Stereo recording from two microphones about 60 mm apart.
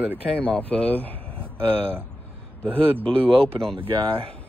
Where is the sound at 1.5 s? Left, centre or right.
Right.